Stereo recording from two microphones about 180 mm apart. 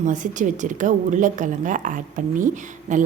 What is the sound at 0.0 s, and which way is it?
Speech, 45° right (ahead or behind).